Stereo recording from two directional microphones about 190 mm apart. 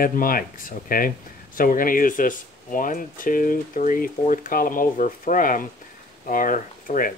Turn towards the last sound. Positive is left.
turn(degrees=45)  # may be behind; listen again after turning